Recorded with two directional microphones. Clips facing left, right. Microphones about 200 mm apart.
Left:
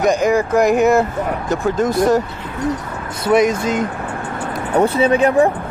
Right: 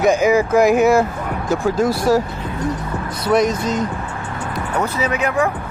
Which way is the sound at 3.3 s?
5° left (ahead or behind).